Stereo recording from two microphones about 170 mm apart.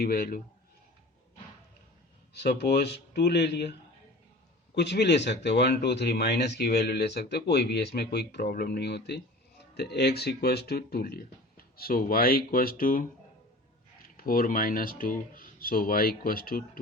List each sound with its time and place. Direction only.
0.0 s speech: 65° left (ahead or behind)
2.3 s speech: 75° left (ahead or behind)
4.7 s speech: 90° left; by 16.6 s 60° left (ahead or behind)